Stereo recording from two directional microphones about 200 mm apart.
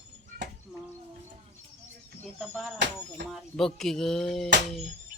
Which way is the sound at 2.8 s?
60° right (ahead or behind).